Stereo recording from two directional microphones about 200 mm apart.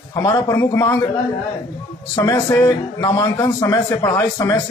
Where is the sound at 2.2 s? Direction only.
15° left (ahead or behind).